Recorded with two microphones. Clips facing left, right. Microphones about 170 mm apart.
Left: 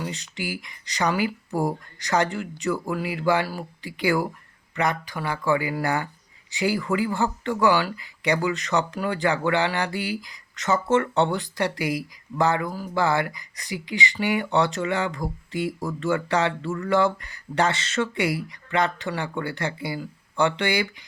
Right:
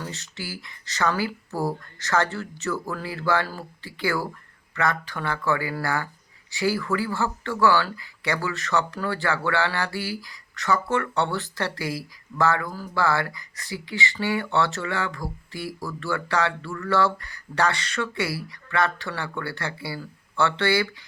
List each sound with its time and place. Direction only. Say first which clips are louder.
0.0 s speech: left 4 dB; 15° left (ahead or behind)